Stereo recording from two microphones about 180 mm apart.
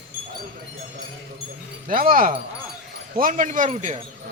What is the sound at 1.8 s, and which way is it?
Speech, 50° right (ahead or behind).